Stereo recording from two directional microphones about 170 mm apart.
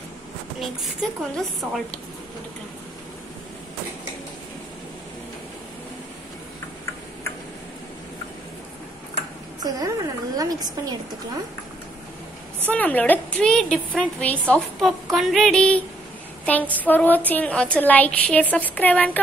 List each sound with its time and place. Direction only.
1.3 s a woman's voice: centre (ahead or behind)
9.6 s a sound: 20° right (ahead or behind)
12.6 s a woman's voice: 10° left (ahead or behind)